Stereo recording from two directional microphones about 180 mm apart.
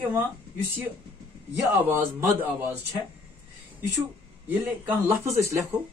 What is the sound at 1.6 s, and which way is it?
Speech, 15° right (ahead or behind).